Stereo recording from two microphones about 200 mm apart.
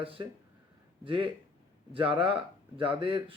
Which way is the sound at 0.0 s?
25° right (ahead or behind).